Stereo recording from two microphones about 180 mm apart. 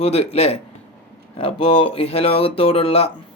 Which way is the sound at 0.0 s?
35° left (ahead or behind).